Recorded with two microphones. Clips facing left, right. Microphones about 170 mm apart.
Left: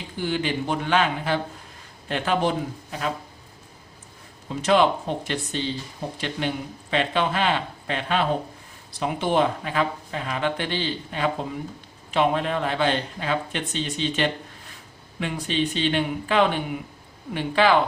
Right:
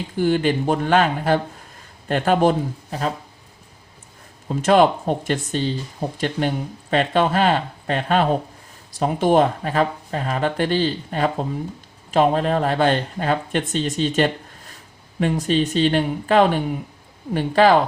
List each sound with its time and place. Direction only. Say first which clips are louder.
0.2 s speech: right 7 dB; 45° right (ahead or behind)
4.4 s speech: right 4 dB; 45° right (ahead or behind)